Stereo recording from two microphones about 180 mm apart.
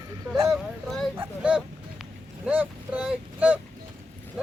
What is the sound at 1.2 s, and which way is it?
Vehicle, 5° right (ahead or behind).